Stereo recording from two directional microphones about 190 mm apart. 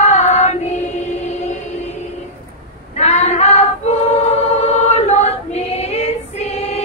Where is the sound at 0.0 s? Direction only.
40° left (ahead or behind).